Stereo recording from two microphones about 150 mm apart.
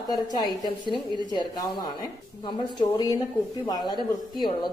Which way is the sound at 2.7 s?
25° left (ahead or behind).